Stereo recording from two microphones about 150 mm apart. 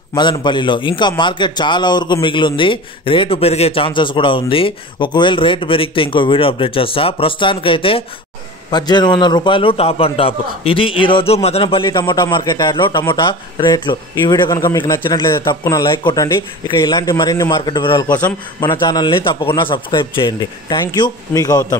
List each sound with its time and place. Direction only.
0.1 s a man's voice: 30° left (ahead or behind)
16.0 s a man's voice: 35° left (ahead or behind)